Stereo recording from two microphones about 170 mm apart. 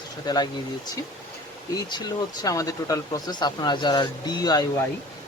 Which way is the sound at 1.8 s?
25° left (ahead or behind).